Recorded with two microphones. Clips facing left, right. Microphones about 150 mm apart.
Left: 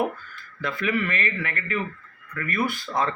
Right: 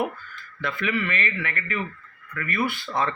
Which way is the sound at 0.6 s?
40° left (ahead or behind).